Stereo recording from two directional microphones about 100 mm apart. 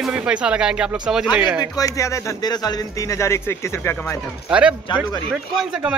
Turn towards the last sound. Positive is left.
turn(degrees=-10)  # may be behind; listen again after turning